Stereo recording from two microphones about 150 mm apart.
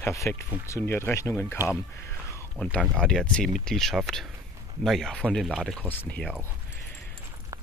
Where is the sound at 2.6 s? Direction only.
5° left (ahead or behind).